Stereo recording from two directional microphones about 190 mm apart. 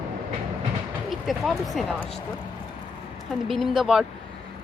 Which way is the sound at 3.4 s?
Centre (ahead or behind).